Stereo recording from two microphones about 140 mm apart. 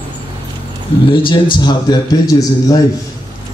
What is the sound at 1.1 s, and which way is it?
Speech, 35° left (ahead or behind).